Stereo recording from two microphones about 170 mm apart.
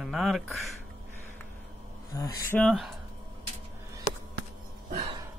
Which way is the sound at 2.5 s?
Centre (ahead or behind).